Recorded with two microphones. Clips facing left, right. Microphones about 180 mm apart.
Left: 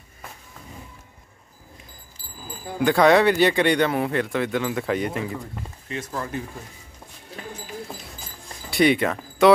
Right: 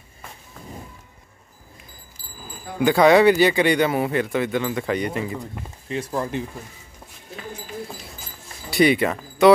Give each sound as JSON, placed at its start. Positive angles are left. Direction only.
{"t": 2.8, "sound": "speech", "side_deg": -5}
{"t": 5.9, "sound": "speech", "side_deg": -30}
{"t": 8.6, "sound": "speech", "side_deg": 0}